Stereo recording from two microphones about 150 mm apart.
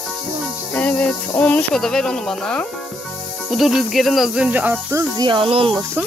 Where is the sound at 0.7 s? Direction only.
10° left (ahead or behind); by 5.1 s 10° right (ahead or behind).